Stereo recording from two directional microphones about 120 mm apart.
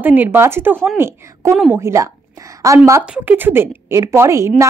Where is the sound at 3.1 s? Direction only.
15° right (ahead or behind).